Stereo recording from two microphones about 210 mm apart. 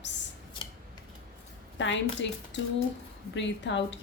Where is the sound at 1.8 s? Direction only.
60° left (ahead or behind).